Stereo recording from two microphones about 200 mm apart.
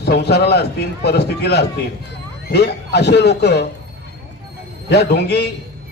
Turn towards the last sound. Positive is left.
turn(degrees=55)  # may be behind; listen again after turning